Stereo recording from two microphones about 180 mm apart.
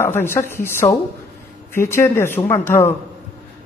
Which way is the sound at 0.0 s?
15° left (ahead or behind).